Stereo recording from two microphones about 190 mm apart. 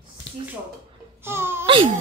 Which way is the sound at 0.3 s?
75° left (ahead or behind).